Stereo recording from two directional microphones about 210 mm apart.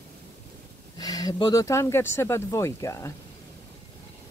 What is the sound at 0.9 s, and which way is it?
Speech, 20° left (ahead or behind).